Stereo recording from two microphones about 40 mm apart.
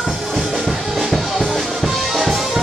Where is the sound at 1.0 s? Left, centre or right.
Centre.